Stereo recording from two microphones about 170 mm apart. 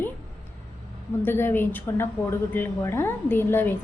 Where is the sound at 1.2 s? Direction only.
15° left (ahead or behind).